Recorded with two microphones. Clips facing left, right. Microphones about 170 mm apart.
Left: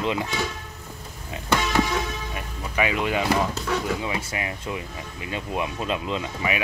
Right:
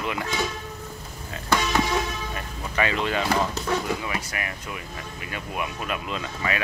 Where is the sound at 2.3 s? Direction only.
10° left (ahead or behind).